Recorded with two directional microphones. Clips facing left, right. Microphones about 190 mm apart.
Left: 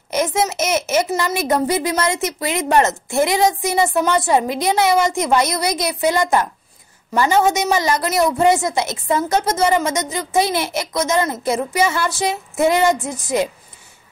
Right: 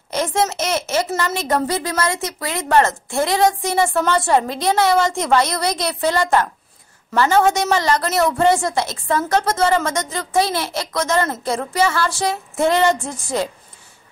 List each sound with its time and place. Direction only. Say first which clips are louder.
0.1 s a child's voice: left 1 dB; 15° left (ahead or behind)